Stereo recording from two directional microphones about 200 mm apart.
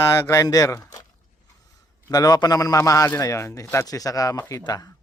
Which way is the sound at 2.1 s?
20° left (ahead or behind).